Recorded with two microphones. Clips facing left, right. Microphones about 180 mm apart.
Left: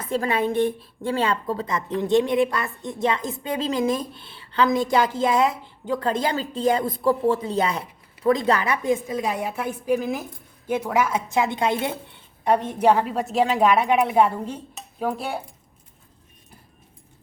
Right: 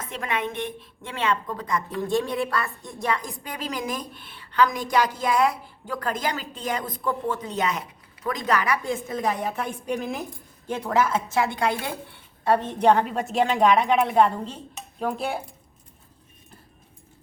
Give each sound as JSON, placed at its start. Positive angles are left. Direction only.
{"t": 0.0, "sound": "a woman's voice", "side_deg": 35}